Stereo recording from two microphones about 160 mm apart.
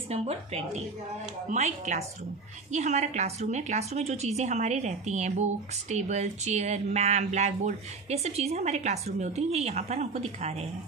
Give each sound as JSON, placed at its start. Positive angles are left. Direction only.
{"t": 0.1, "sound": "a woman's voice", "side_deg": -40}